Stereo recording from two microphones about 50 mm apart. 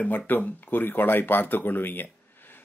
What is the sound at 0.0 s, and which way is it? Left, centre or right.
Speech, left.